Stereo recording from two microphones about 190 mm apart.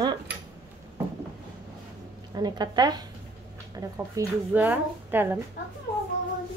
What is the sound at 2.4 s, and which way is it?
A woman's voice, 20° right (ahead or behind).